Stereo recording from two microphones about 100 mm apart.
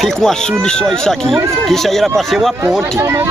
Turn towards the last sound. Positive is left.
turn(degrees=-30)  # may be behind; listen again after turning